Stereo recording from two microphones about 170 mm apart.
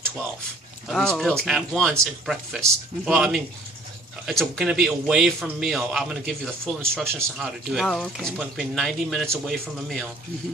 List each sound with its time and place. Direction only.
0.9 s a man's voice: centre (ahead or behind)